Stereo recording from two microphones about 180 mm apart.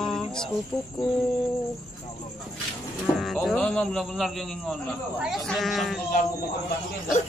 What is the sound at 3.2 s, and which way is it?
Speech, centre (ahead or behind).